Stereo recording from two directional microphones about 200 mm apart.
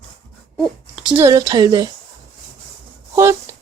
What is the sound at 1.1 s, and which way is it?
Speech, 15° right (ahead or behind).